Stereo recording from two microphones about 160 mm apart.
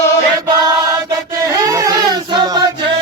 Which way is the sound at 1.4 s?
20° right (ahead or behind).